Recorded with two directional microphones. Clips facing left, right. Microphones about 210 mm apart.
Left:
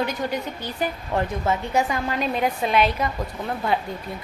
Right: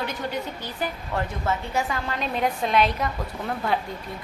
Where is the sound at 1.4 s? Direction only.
20° left (ahead or behind).